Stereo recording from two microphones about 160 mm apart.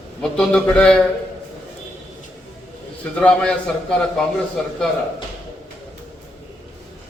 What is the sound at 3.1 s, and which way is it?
A man's voice, 5° left (ahead or behind).